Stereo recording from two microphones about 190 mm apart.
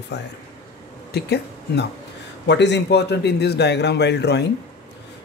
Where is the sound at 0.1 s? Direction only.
65° left (ahead or behind).